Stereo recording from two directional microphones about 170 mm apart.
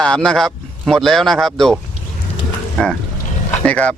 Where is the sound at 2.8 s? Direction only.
Centre (ahead or behind).